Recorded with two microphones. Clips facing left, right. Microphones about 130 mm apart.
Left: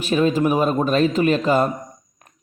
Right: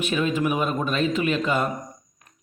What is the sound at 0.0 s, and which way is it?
A man's voice, 35° left (ahead or behind).